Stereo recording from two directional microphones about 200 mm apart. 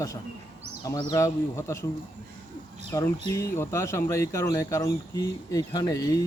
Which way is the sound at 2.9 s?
15° left (ahead or behind).